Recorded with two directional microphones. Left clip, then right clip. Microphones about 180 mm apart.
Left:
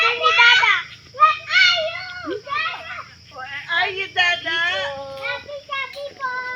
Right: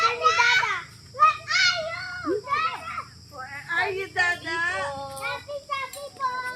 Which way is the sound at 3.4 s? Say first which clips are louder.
Left 5 dB; 35° left (ahead or behind).